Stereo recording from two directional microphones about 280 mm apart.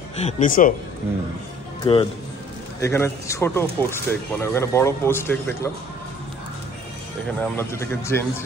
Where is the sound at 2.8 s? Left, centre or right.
Centre.